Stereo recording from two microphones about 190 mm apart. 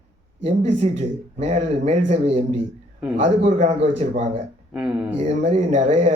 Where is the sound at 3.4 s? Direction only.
35° right (ahead or behind).